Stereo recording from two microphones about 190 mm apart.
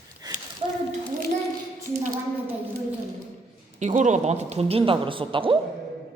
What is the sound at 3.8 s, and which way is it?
A woman's voice, 40° right (ahead or behind).